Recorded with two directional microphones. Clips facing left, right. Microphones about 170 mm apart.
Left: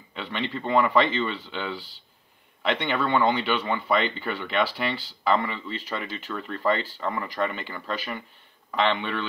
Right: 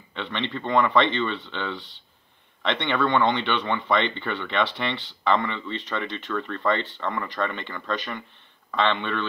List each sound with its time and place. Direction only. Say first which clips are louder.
0.1 s a man's voice: right 1 dB; 10° left (ahead or behind)
6.4 s speech: left 4 dB; 30° left (ahead or behind)
7.2 s speech: even; 10° left (ahead or behind)